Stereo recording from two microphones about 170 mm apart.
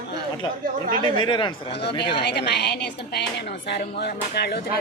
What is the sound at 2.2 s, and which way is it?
A woman's voice, 80° left.